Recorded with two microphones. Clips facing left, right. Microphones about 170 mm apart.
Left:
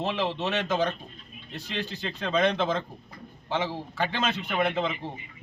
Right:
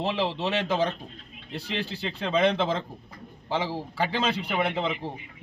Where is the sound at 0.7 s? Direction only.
35° right (ahead or behind).